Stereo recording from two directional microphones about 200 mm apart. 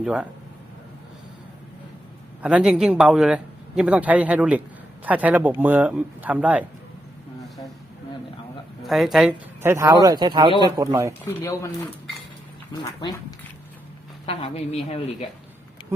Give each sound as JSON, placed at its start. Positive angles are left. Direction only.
{"t": 0.0, "sound": "speech", "side_deg": -5}
{"t": 2.4, "sound": "speech", "side_deg": -5}
{"t": 8.8, "sound": "speech", "side_deg": 0}
{"t": 12.7, "sound": "speech", "side_deg": 20}
{"t": 14.3, "sound": "speech", "side_deg": 30}